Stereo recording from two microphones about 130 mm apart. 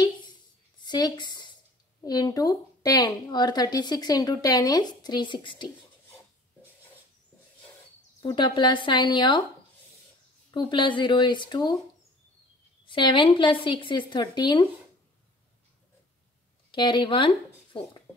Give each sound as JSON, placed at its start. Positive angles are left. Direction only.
{"t": 0.7, "sound": "a woman's voice", "side_deg": 35}
{"t": 8.3, "sound": "speech", "side_deg": 35}
{"t": 10.5, "sound": "speech", "side_deg": 40}
{"t": 12.8, "sound": "speech", "side_deg": 40}
{"t": 16.7, "sound": "speech", "side_deg": 40}